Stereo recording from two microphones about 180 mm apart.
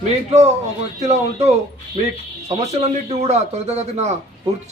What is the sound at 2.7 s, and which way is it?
A man's voice, 35° right (ahead or behind).